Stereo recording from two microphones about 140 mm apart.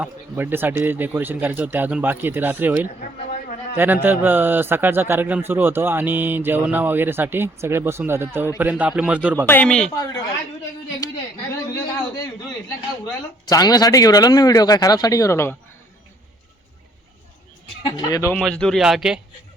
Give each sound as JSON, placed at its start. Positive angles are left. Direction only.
{"t": 0.0, "sound": "a man's voice", "side_deg": -15}
{"t": 9.5, "sound": "a man's voice", "side_deg": 10}
{"t": 11.5, "sound": "a man's voice", "side_deg": 20}
{"t": 13.4, "sound": "a man's voice", "side_deg": 30}
{"t": 17.8, "sound": "a man's voice", "side_deg": 30}
{"t": 18.3, "sound": "a man's voice", "side_deg": 5}